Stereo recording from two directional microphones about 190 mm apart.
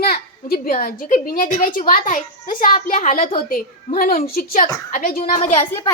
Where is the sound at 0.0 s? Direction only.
50° left (ahead or behind).